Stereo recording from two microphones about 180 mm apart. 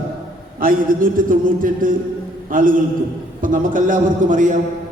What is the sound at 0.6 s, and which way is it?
A man's voice, 50° right (ahead or behind).